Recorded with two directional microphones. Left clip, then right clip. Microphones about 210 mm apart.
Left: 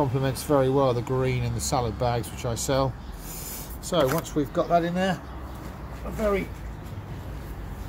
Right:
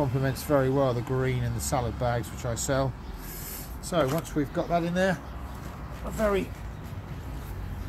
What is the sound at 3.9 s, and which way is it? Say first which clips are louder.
Speech: left 3 dB; 15° left (ahead or behind).